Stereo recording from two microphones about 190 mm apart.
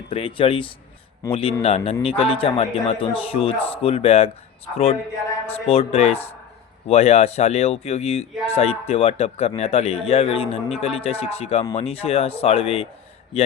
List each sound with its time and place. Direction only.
0.1 s speech: 30° left (ahead or behind)